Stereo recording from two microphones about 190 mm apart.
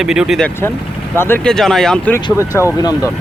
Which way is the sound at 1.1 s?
10° left (ahead or behind).